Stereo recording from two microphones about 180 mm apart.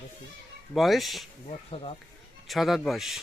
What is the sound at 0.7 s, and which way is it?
Speech, centre (ahead or behind).